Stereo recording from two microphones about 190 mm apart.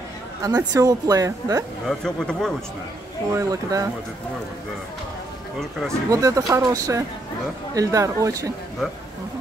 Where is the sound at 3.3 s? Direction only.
20° right (ahead or behind).